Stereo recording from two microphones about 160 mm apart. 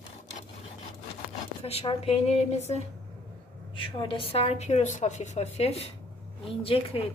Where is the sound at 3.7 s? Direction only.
30° left (ahead or behind).